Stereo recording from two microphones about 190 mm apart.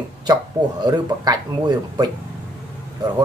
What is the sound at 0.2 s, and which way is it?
Speech, 20° right (ahead or behind).